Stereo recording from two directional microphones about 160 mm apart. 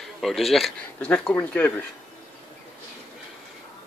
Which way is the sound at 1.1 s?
10° left (ahead or behind).